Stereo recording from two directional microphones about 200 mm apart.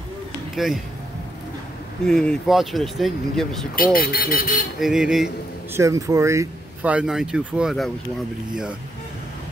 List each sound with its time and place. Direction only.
0.6 s speech: centre (ahead or behind)
2.0 s speech: 5° left (ahead or behind)
3.7 s speech: 45° left (ahead or behind)
4.7 s speech: centre (ahead or behind)
5.8 s speech: 15° right (ahead or behind)